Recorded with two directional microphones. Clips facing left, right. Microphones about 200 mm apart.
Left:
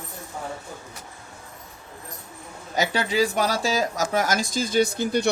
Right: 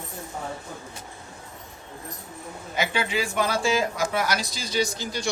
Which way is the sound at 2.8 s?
40° left (ahead or behind).